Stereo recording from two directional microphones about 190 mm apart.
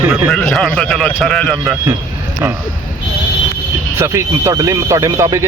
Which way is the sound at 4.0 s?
15° right (ahead or behind).